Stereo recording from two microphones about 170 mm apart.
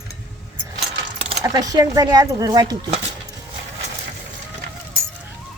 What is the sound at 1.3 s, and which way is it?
Speech, 20° right (ahead or behind).